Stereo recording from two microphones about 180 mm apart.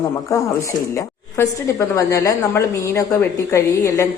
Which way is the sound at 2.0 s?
20° left (ahead or behind).